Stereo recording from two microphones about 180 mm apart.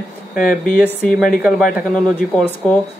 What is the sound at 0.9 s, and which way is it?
A woman's voice, 5° left (ahead or behind).